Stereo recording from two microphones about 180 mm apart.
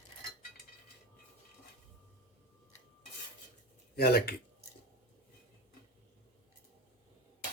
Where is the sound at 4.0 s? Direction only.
60° left (ahead or behind).